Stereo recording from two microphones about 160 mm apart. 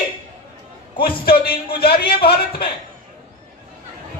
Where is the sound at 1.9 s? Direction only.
35° left (ahead or behind).